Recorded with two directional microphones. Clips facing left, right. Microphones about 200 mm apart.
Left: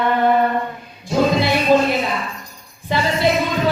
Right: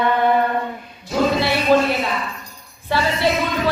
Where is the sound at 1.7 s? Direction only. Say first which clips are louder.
Left 1 dB; 15° left (ahead or behind).